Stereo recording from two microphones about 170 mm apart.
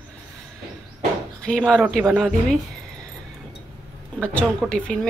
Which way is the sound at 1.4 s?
5° left (ahead or behind).